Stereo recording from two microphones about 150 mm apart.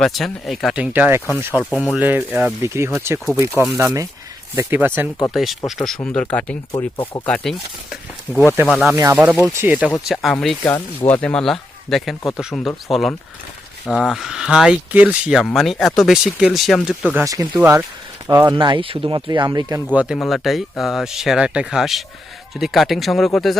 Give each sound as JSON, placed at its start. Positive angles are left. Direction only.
{"t": 0.0, "sound": "speech", "side_deg": 0}
{"t": 5.3, "sound": "speech", "side_deg": 0}
{"t": 6.7, "sound": "speech", "side_deg": 25}
{"t": 7.3, "sound": "speech", "side_deg": 10}
{"t": 9.2, "sound": "speech", "side_deg": -10}
{"t": 10.0, "sound": "speech", "side_deg": 0}
{"t": 10.6, "sound": "speech", "side_deg": 15}
{"t": 17.2, "sound": "speech", "side_deg": -20}
{"t": 18.3, "sound": "speech", "side_deg": -25}
{"t": 19.9, "sound": "speech", "side_deg": -10}